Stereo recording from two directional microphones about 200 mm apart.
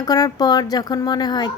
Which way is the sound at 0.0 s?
20° left (ahead or behind).